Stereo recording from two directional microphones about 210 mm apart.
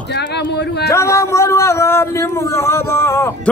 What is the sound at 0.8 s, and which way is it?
A man's voice, 15° left (ahead or behind).